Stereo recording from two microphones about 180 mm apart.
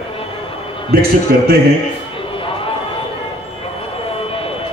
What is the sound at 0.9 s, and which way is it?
Speech, 55° right (ahead or behind).